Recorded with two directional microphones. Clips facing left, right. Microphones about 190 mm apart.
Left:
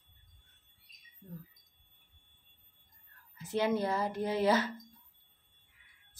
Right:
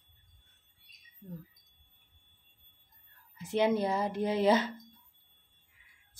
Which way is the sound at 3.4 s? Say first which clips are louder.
Right 3 dB; 20° right (ahead or behind).